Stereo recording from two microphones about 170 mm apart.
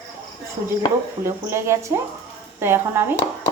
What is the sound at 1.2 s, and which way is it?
A woman's voice, 15° right (ahead or behind).